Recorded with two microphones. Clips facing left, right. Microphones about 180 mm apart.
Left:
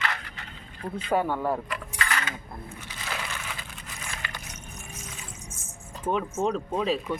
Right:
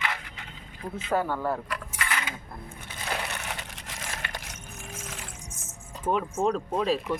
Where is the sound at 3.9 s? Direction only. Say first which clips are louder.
Right 2 dB; 90° right.